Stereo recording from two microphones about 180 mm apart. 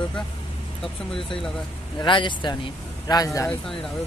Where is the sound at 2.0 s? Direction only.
25° left (ahead or behind).